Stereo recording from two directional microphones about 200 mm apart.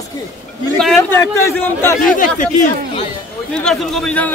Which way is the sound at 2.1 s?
40° left (ahead or behind).